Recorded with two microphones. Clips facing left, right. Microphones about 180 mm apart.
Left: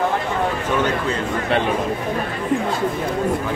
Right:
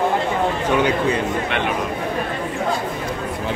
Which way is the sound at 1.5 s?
35° left (ahead or behind).